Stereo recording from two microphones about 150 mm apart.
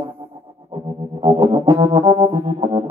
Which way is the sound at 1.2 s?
35° right (ahead or behind).